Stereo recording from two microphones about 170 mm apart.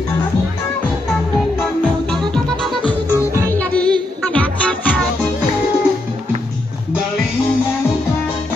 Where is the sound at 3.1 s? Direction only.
15° right (ahead or behind).